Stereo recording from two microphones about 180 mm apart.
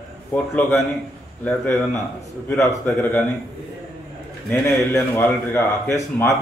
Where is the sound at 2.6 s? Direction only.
15° left (ahead or behind).